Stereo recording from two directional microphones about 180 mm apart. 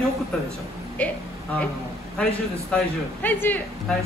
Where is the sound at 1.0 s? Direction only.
10° left (ahead or behind).